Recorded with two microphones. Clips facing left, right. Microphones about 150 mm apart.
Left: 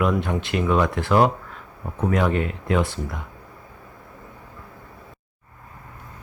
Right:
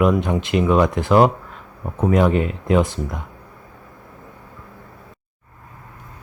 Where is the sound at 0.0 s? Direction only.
20° right (ahead or behind).